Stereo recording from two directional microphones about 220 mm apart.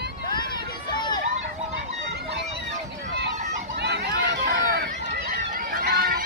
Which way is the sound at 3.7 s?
50° right (ahead or behind).